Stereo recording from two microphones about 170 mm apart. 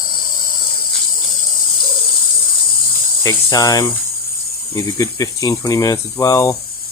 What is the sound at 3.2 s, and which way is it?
Speech, 20° left (ahead or behind).